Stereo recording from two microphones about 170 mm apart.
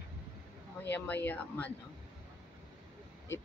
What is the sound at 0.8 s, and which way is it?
Speech, 10° left (ahead or behind).